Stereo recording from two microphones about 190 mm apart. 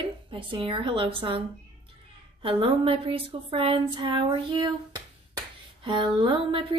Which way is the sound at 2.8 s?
30° right (ahead or behind).